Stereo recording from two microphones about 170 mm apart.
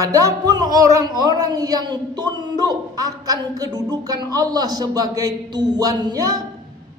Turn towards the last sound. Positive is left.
turn(degrees=-20)  # may be behind; listen again after turning